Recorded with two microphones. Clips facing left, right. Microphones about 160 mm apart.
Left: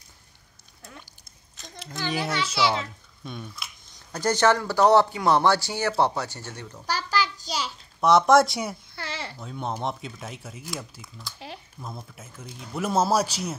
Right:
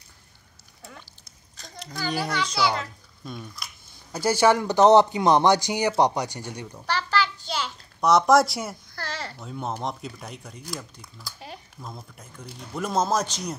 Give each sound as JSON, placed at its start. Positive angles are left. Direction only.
{"t": 1.6, "sound": "a child's voice", "side_deg": 0}
{"t": 7.5, "sound": "a child's voice", "side_deg": 5}